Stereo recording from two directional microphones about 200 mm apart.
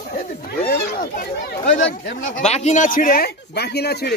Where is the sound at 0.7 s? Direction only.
45° left (ahead or behind).